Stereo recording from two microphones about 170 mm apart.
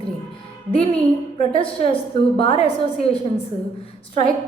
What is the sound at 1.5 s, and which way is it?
Speech, 30° left (ahead or behind).